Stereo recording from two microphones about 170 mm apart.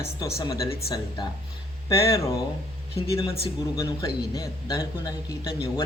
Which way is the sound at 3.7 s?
20° left (ahead or behind).